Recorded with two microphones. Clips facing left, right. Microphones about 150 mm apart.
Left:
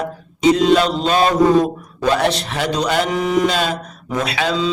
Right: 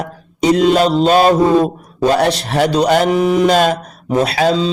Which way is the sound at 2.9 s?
45° right (ahead or behind).